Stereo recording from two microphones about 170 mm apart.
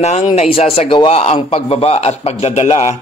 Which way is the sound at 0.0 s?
40° left (ahead or behind).